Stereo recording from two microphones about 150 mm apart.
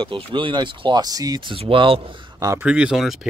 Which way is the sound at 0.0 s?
35° right (ahead or behind).